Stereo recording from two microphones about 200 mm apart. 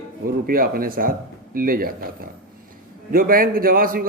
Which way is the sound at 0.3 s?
45° right (ahead or behind).